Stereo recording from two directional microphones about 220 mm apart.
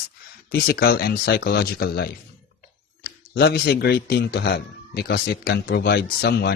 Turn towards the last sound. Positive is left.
turn(degrees=45)  # may be behind; listen again after turning